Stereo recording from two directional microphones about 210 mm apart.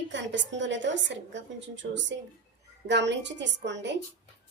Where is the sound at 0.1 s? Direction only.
60° right (ahead or behind).